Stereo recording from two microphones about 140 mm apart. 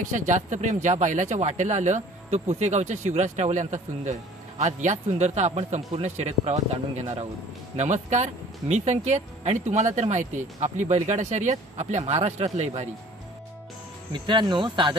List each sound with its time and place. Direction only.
0.1 s a man's voice: 65° right (ahead or behind)
14.1 s speech: 35° right (ahead or behind)